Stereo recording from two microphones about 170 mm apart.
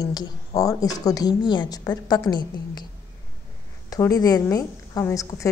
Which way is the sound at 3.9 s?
20° left (ahead or behind).